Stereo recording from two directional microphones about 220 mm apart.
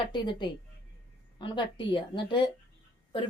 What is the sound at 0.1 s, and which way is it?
Speech, 20° left (ahead or behind).